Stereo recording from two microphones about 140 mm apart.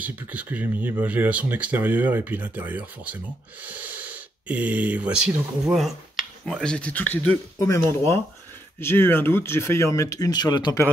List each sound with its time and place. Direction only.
0.0 s speech: 10° right (ahead or behind)
6.4 s speech: 5° left (ahead or behind)
7.5 s speech: 20° left (ahead or behind)